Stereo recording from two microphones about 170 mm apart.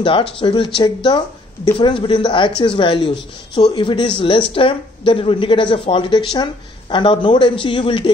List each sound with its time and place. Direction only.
0.0 s speech: 30° left (ahead or behind)